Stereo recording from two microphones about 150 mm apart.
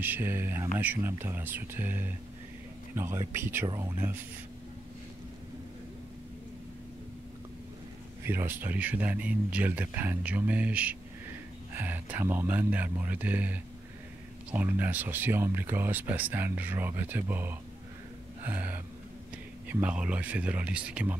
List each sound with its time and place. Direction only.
0.0 s speech: 15° right (ahead or behind)
8.2 s speech: 15° right (ahead or behind)
18.4 s gasp: 10° right (ahead or behind)
19.7 s speech: 10° right (ahead or behind)